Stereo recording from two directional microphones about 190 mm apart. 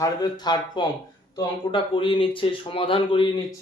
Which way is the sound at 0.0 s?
20° left (ahead or behind).